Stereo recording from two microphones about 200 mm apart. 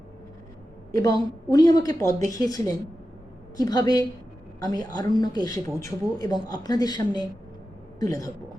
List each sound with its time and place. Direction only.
0.9 s a woman's voice: 20° left (ahead or behind)